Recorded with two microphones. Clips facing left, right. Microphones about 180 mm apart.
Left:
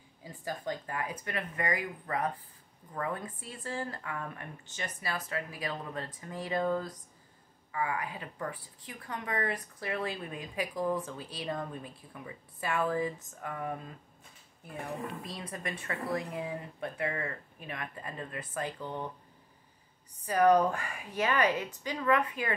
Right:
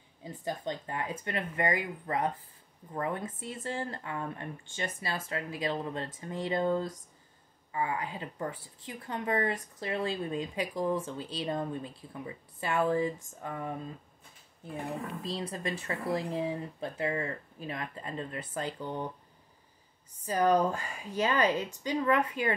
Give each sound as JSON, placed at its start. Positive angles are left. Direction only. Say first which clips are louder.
{"t": 0.2, "sound": "speech", "louder": "right 3 dB", "side_deg": -25}
{"t": 15.2, "sound": "speech", "louder": "right 5 dB", "side_deg": -25}
{"t": 20.2, "sound": "speech", "louder": "left 2 dB", "side_deg": -25}